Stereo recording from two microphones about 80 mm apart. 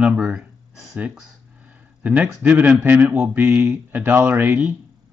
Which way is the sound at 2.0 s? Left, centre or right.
Right.